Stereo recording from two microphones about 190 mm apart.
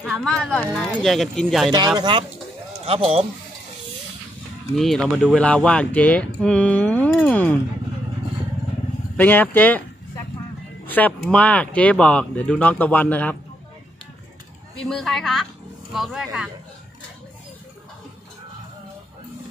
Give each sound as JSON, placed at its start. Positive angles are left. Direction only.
{"t": 0.0, "sound": "speech", "side_deg": 5}
{"t": 2.0, "sound": "speech", "side_deg": -25}
{"t": 4.7, "sound": "speech", "side_deg": 0}
{"t": 7.1, "sound": "music", "side_deg": 5}
{"t": 9.1, "sound": "speech", "side_deg": 10}
{"t": 10.9, "sound": "speech", "side_deg": 10}
{"t": 14.9, "sound": "speech", "side_deg": 0}